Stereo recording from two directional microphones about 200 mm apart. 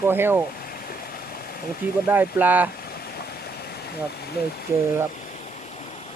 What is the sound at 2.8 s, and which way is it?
Vehicle, 50° left (ahead or behind).